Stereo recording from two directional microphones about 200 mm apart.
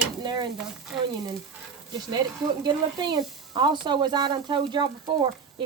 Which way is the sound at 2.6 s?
20° right (ahead or behind).